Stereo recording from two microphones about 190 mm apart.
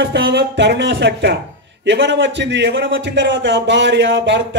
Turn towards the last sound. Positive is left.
turn(degrees=-70)  # may be behind; listen again after turning